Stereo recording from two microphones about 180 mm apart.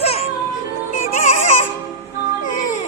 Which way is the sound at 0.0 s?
35° left (ahead or behind).